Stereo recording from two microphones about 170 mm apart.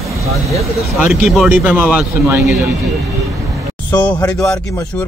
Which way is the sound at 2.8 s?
Centre (ahead or behind).